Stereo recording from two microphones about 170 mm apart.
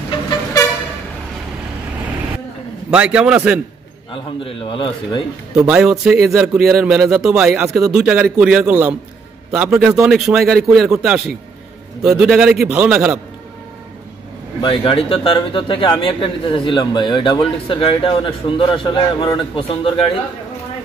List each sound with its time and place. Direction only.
0.1 s vehicle: 20° left (ahead or behind)
2.9 s a man's voice: 5° right (ahead or behind)
4.1 s a man's voice: 30° left (ahead or behind)
5.6 s a man's voice: 5° right (ahead or behind)
14.6 s speech: 30° left (ahead or behind)